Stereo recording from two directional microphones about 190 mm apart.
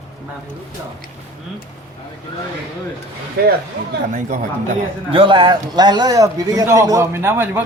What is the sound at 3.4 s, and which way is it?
Speech, 55° right (ahead or behind).